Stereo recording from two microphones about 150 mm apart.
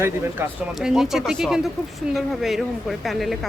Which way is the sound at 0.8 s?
Centre (ahead or behind).